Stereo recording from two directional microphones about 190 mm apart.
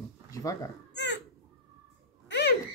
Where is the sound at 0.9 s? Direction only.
65° left (ahead or behind).